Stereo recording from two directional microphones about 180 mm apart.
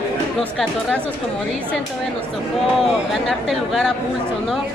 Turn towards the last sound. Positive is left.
turn(degrees=0)  # may be behind; listen again after turning